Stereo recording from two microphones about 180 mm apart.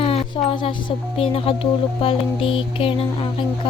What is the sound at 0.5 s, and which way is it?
Music, 25° left (ahead or behind).